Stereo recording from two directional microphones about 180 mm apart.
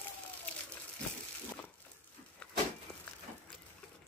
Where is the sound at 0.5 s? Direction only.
5° left (ahead or behind).